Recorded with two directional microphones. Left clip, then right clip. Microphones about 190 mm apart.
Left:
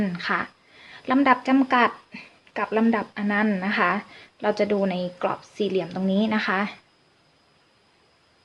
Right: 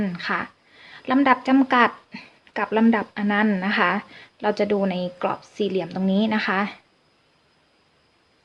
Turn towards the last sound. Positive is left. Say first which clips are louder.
# right 1 dB
turn(degrees=-10)  # may be behind; listen again after turning